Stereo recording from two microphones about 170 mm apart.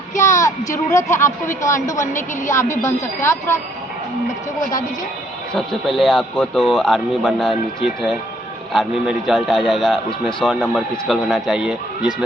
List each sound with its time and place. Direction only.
0.2 s a sound: 15° left (ahead or behind)
0.9 s a woman's voice: 15° left (ahead or behind)
5.5 s speech: centre (ahead or behind)